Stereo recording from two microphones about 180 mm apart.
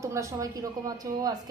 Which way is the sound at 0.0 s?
15° right (ahead or behind).